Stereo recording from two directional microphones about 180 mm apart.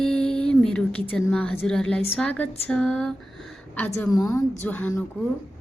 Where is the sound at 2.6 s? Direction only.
5° left (ahead or behind).